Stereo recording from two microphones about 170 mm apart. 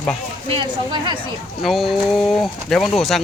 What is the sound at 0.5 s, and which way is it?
Speech, 25° right (ahead or behind).